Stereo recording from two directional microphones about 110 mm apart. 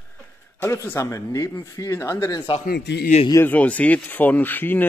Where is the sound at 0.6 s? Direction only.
25° left (ahead or behind).